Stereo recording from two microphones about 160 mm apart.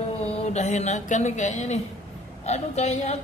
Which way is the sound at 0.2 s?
40° left (ahead or behind).